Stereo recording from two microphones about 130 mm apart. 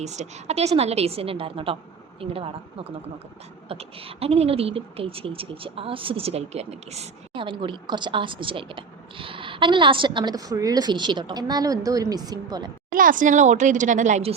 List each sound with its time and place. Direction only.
0.0 s speech: 60° right (ahead or behind)
7.4 s speech: 40° right (ahead or behind)
12.9 s a woman's voice: 90° right; by 14.3 s 60° right (ahead or behind)